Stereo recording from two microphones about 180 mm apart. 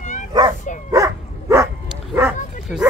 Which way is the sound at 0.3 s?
20° right (ahead or behind).